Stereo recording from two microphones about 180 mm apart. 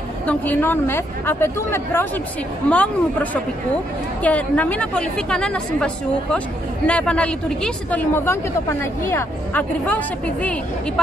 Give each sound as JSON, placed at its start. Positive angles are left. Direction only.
{"t": 0.3, "sound": "a woman's voice", "side_deg": 10}
{"t": 6.9, "sound": "speech", "side_deg": 5}